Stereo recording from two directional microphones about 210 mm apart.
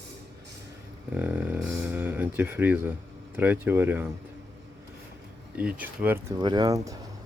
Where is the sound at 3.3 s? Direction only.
10° right (ahead or behind).